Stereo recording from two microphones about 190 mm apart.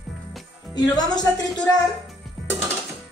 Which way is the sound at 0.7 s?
20° left (ahead or behind).